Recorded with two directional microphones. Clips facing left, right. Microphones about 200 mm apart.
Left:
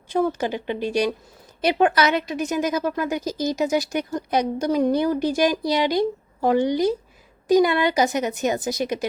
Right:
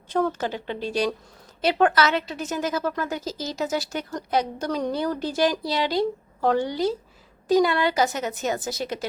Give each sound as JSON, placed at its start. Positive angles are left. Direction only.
{"t": 0.1, "sound": "a woman's voice", "side_deg": 15}